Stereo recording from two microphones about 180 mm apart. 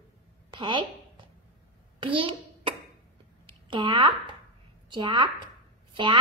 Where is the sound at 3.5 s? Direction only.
25° right (ahead or behind).